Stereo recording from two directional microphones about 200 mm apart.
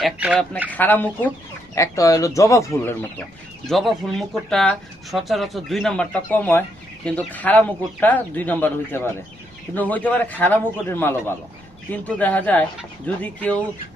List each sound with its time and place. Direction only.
0.0 s speech: 5° right (ahead or behind)
0.7 s a man's voice: 10° left (ahead or behind)
3.7 s a man's voice: centre (ahead or behind)